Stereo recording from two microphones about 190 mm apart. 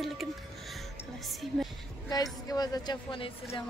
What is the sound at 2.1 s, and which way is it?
A woman's voice, 20° left (ahead or behind).